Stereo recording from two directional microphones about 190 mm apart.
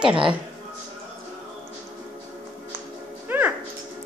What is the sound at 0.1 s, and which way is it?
Speech, 25° right (ahead or behind).